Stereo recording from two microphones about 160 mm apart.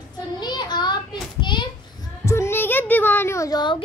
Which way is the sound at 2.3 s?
15° left (ahead or behind).